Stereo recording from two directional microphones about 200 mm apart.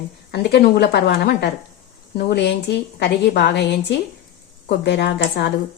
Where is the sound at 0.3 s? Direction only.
55° left (ahead or behind).